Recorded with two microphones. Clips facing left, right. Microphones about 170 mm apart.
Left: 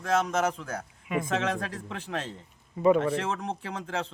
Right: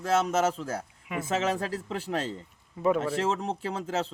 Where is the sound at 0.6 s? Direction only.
5° right (ahead or behind).